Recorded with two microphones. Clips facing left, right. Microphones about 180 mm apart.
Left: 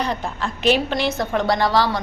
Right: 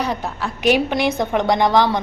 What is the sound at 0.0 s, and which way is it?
A woman's voice, 10° right (ahead or behind).